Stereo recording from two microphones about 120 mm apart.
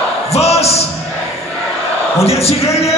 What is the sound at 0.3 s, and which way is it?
Speech, 60° left (ahead or behind).